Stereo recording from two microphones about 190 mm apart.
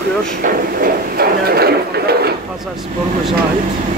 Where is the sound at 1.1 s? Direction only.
55° right (ahead or behind).